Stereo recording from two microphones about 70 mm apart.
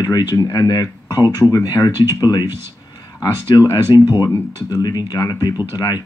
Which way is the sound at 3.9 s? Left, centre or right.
Left.